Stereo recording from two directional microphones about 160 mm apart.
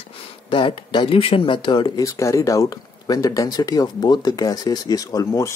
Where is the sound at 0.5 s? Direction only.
30° left (ahead or behind).